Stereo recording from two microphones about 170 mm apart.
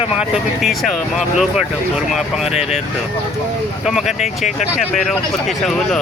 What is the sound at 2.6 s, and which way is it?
Speech, 40° left (ahead or behind).